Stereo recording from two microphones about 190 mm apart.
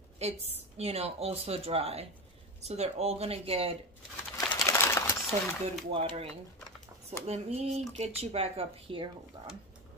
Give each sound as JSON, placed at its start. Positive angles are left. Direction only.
{"t": 0.2, "sound": "speech", "side_deg": -35}
{"t": 4.4, "sound": "a sound", "side_deg": 15}
{"t": 5.9, "sound": "speech", "side_deg": -30}